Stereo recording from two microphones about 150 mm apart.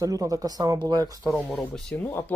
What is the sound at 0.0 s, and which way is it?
Speech, 20° right (ahead or behind).